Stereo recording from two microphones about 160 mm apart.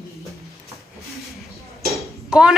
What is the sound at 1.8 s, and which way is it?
Dishes, centre (ahead or behind).